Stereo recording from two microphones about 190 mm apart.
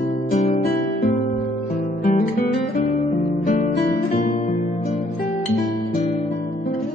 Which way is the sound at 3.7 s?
60° left (ahead or behind).